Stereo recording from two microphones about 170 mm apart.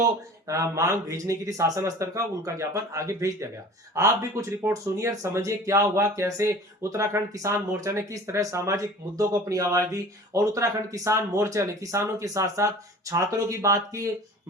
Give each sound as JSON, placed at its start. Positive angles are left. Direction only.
{"t": 0.0, "sound": "speech", "side_deg": -20}